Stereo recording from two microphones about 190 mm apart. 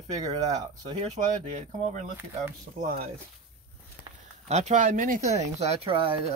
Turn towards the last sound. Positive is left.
turn(degrees=-30)  # may be behind; listen again after turning